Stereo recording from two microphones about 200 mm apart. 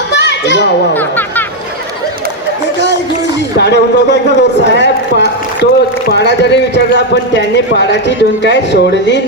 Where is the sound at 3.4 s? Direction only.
60° left (ahead or behind).